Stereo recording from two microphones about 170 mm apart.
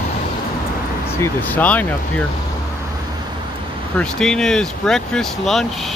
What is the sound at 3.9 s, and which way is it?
Speech, 5° left (ahead or behind).